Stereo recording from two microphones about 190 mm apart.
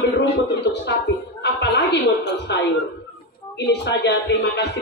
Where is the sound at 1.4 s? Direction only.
65° left (ahead or behind).